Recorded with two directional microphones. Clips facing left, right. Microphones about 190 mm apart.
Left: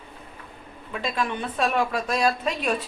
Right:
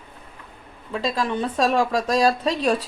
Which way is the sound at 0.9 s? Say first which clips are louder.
Right 4 dB; 30° right (ahead or behind).